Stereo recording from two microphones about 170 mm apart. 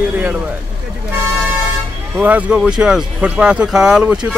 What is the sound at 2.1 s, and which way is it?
Speech, 10° right (ahead or behind).